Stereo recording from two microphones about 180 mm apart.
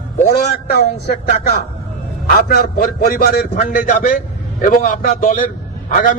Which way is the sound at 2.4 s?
55° left (ahead or behind).